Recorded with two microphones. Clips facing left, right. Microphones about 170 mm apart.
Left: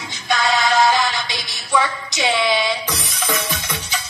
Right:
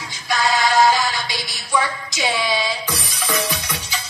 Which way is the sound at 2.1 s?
25° left (ahead or behind).